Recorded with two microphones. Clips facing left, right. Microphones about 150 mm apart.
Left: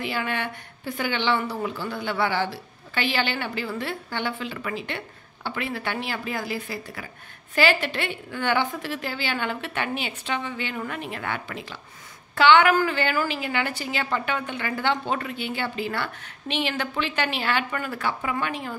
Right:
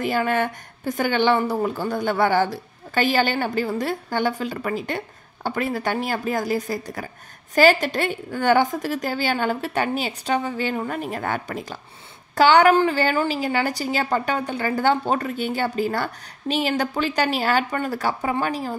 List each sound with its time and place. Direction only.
0.0 s a woman's voice: 45° right (ahead or behind)